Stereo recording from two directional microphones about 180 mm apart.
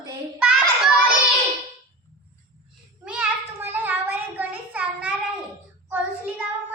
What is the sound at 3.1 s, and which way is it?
A child's voice, 10° right (ahead or behind).